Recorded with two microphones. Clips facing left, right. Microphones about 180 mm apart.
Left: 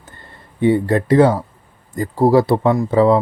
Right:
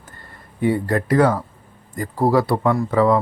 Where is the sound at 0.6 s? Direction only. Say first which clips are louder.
Left 4 dB; 25° left (ahead or behind).